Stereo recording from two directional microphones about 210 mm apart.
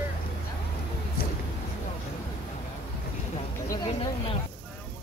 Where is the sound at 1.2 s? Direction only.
45° left (ahead or behind).